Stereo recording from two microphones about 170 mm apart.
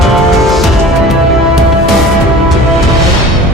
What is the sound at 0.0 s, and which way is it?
Music, centre (ahead or behind).